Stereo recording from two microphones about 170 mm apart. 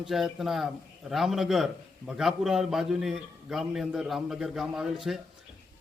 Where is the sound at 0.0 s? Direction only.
Centre (ahead or behind).